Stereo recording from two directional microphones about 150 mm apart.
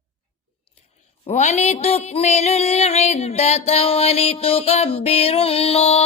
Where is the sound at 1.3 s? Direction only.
50° left (ahead or behind).